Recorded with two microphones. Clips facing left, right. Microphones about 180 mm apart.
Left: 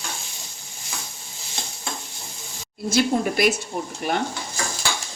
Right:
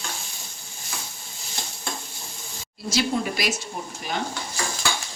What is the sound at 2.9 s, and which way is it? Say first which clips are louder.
Speech: left 4 dB; 55° left (ahead or behind).